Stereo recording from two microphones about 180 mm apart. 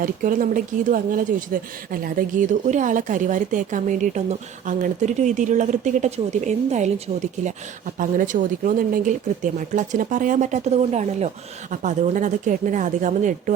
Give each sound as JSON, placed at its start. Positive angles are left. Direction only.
{"t": 0.0, "sound": "speech", "side_deg": -50}
{"t": 7.9, "sound": "speech", "side_deg": -45}